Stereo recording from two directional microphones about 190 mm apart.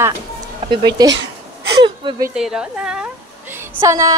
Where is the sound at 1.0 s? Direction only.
20° right (ahead or behind).